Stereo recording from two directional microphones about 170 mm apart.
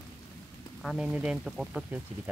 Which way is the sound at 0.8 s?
5° right (ahead or behind).